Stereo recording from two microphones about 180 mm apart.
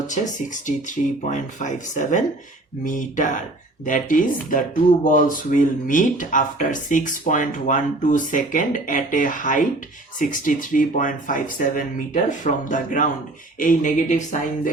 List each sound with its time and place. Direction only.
0.1 s speech: 45° left (ahead or behind)